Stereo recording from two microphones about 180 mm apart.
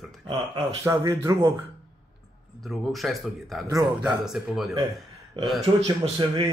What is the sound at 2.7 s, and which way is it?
Speech, centre (ahead or behind).